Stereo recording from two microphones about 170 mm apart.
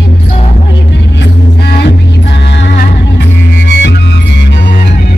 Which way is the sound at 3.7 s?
80° left.